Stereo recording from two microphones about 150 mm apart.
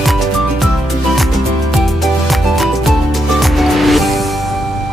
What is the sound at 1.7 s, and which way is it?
Music, centre (ahead or behind).